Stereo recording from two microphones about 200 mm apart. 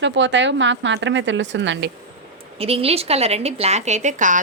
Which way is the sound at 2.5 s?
30° right (ahead or behind).